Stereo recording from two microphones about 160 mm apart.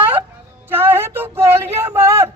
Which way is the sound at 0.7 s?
15° right (ahead or behind).